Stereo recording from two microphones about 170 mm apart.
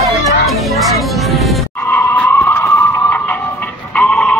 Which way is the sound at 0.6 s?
Centre (ahead or behind).